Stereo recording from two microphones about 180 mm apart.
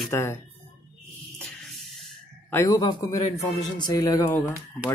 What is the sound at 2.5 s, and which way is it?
Speech, 15° left (ahead or behind).